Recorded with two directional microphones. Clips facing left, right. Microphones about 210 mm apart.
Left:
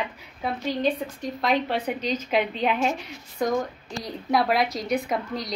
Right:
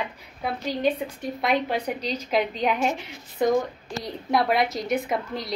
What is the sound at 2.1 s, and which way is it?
A woman's voice, 5° left (ahead or behind).